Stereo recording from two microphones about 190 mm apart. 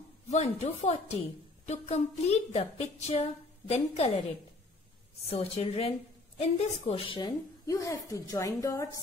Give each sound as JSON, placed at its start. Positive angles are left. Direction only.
{"t": 0.3, "sound": "a woman's voice", "side_deg": 35}
{"t": 5.2, "sound": "a woman's voice", "side_deg": 30}